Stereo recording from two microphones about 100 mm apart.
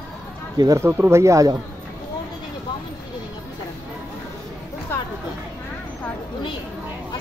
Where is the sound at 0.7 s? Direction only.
20° right (ahead or behind).